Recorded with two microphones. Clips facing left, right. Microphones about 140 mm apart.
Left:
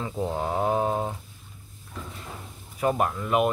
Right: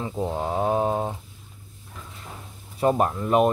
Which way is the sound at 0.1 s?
15° right (ahead or behind).